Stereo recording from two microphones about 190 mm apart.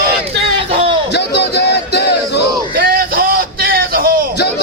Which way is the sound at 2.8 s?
50° right (ahead or behind).